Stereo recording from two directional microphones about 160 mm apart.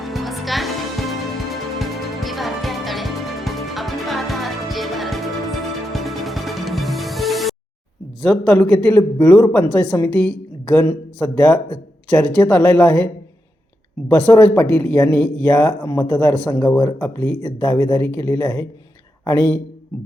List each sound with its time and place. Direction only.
0.0 s music: centre (ahead or behind)
1.8 s music: centre (ahead or behind)
8.2 s a woman's voice: 5° left (ahead or behind)
14.1 s speech: 10° left (ahead or behind)
15.9 s a man's voice: 25° left (ahead or behind)
16.8 s speech: 10° left (ahead or behind)